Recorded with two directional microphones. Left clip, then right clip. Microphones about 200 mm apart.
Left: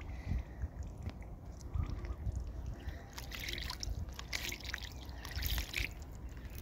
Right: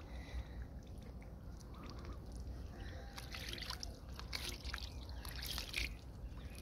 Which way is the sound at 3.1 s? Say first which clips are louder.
Left 5 dB; 30° left (ahead or behind).